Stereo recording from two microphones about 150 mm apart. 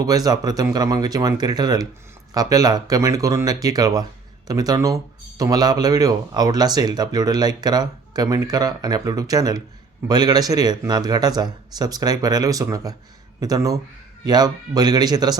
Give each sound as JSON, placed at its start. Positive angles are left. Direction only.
{"t": 0.0, "sound": "speech", "side_deg": -25}